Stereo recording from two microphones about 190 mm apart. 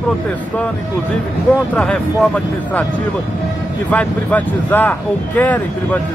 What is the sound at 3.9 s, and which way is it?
Speech, 10° left (ahead or behind).